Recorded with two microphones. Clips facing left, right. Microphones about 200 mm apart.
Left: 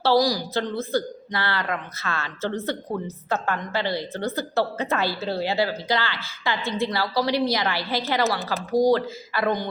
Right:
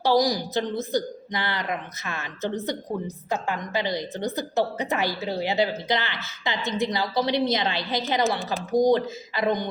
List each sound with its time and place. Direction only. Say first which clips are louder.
0.0 s a woman's voice: left 1 dB; 20° right (ahead or behind)